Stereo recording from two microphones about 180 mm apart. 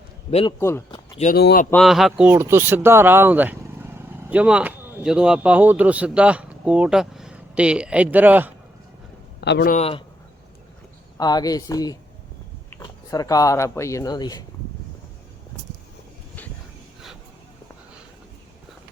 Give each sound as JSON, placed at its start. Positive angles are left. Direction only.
{"t": 0.3, "sound": "a man's voice", "side_deg": 35}
{"t": 0.9, "sound": "a sound", "side_deg": 30}
{"t": 1.4, "sound": "speech", "side_deg": 65}
{"t": 1.7, "sound": "speech", "side_deg": 0}
{"t": 9.4, "sound": "speech", "side_deg": 70}
{"t": 9.6, "sound": "a man's voice", "side_deg": 35}
{"t": 11.2, "sound": "speech", "side_deg": 20}